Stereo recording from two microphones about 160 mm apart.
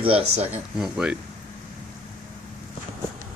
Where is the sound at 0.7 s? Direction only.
5° right (ahead or behind).